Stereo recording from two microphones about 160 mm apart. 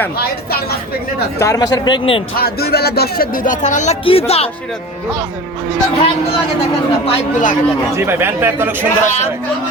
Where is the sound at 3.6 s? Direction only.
45° left (ahead or behind).